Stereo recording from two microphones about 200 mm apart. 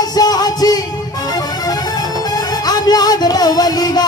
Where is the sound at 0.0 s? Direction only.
20° left (ahead or behind).